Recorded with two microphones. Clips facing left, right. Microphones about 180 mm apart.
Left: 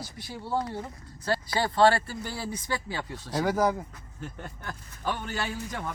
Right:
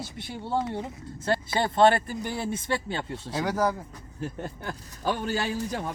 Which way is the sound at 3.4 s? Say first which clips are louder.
Left 1 dB; 10° left (ahead or behind).